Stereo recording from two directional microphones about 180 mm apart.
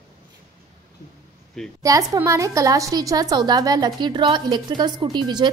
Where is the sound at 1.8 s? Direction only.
20° right (ahead or behind).